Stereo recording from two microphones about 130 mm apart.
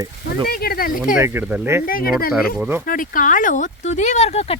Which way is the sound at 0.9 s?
90° left.